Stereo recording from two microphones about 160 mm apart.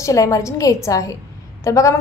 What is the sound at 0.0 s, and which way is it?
A woman's voice, 20° left (ahead or behind).